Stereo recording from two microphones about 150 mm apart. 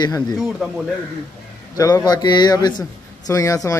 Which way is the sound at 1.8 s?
25° left (ahead or behind).